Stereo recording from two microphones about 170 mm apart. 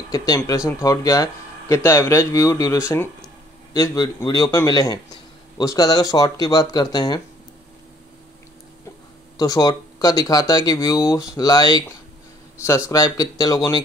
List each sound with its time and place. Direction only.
0.1 s speech: 20° left (ahead or behind)
9.4 s speech: 20° left (ahead or behind)